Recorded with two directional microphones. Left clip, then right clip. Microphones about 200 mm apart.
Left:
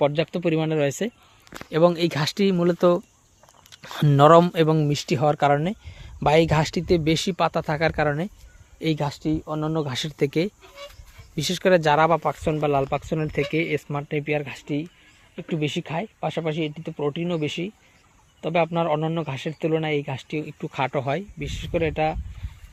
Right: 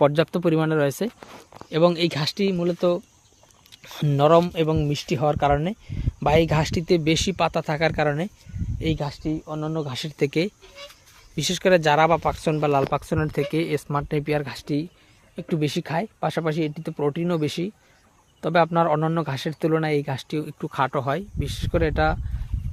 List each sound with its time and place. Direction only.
0.0 s speech: 20° right (ahead or behind); by 2.3 s 5° left (ahead or behind)
2.3 s speech: 15° left (ahead or behind); by 8.3 s centre (ahead or behind)
8.8 s speech: 15° left (ahead or behind)
10.1 s speech: centre (ahead or behind); by 20.7 s 15° right (ahead or behind)
20.7 s speech: 5° right (ahead or behind)